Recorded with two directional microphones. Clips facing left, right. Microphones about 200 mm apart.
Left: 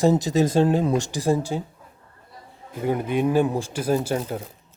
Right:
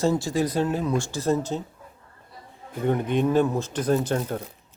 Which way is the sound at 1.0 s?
15° left (ahead or behind).